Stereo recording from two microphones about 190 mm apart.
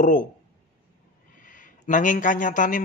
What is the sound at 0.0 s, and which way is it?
Speech, 45° left (ahead or behind).